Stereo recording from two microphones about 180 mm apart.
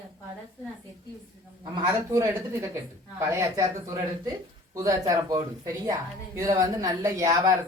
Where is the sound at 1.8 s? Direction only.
15° right (ahead or behind).